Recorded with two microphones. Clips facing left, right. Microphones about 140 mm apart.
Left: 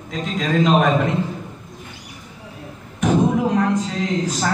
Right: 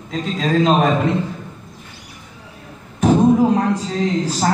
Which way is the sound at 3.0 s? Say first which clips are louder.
Right 4 dB; 30° right (ahead or behind).